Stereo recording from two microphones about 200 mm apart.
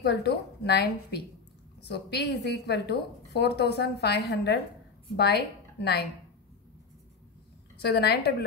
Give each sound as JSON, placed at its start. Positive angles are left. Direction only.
{"t": 0.0, "sound": "a woman's voice", "side_deg": 55}
{"t": 7.8, "sound": "a woman's voice", "side_deg": 55}